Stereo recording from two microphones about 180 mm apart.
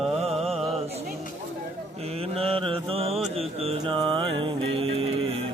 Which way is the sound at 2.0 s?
35° right (ahead or behind).